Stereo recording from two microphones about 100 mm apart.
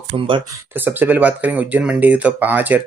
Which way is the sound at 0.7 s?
20° right (ahead or behind).